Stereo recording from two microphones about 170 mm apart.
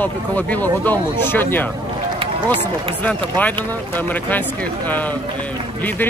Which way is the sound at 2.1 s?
30° right (ahead or behind).